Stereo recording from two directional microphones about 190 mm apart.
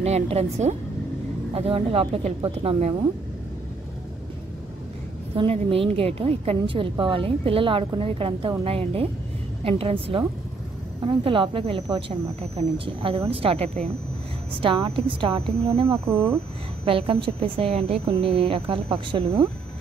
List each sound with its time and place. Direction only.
0.0 s speech: 35° right (ahead or behind)
5.3 s a woman's voice: 30° right (ahead or behind)
15.9 s speech: 15° right (ahead or behind)
16.8 s a woman's voice: 30° right (ahead or behind)